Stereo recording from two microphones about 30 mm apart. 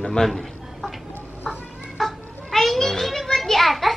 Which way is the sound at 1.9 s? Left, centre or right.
Centre.